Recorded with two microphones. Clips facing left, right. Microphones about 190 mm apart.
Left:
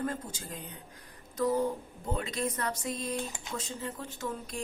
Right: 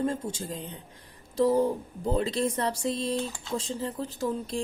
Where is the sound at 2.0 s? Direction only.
30° right (ahead or behind).